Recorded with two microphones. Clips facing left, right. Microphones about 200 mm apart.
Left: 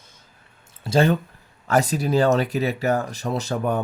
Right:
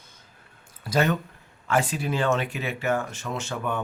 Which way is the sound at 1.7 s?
40° left (ahead or behind).